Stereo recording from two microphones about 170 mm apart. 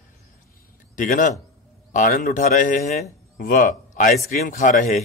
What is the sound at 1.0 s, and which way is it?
A man's voice, 50° left (ahead or behind).